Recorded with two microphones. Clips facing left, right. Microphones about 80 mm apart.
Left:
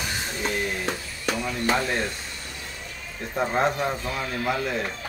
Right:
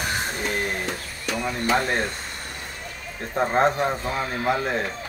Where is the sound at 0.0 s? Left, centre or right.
Right.